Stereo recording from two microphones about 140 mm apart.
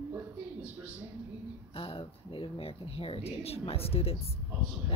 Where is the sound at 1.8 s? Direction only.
40° left (ahead or behind).